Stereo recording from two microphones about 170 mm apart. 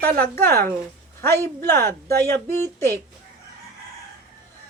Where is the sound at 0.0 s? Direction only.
10° left (ahead or behind).